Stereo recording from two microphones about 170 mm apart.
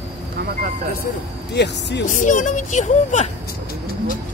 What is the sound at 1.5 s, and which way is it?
Speech, 85° left.